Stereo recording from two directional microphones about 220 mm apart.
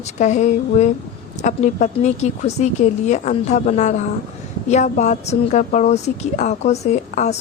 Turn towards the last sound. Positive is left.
turn(degrees=30)  # may be behind; listen again after turning